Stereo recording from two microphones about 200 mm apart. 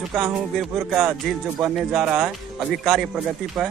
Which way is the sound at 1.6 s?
5° right (ahead or behind).